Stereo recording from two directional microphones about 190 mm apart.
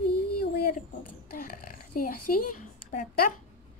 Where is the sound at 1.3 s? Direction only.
50° left (ahead or behind).